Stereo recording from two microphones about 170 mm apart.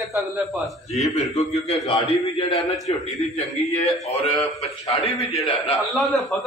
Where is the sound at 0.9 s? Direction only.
40° left (ahead or behind).